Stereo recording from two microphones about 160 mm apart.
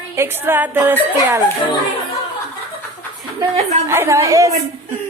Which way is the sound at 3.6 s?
40° right (ahead or behind).